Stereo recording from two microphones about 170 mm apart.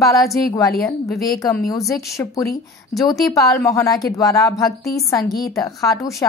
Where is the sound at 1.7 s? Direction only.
20° left (ahead or behind).